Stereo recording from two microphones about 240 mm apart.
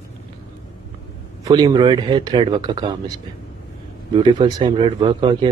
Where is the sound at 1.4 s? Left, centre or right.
Centre.